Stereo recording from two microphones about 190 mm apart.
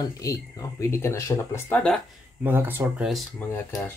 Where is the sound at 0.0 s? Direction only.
20° left (ahead or behind).